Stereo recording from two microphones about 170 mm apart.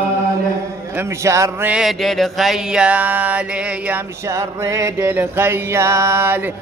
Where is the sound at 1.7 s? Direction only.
Centre (ahead or behind).